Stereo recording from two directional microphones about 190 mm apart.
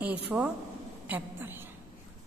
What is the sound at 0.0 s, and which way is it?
A woman's voice, 5° right (ahead or behind).